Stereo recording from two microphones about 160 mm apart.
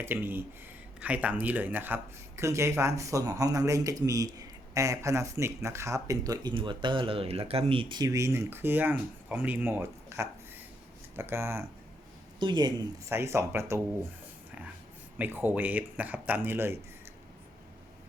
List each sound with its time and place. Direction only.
0.0 s speech: 15° right (ahead or behind)
12.4 s speech: 25° right (ahead or behind)
13.1 s speech: 15° right (ahead or behind)
15.2 s speech: 10° right (ahead or behind)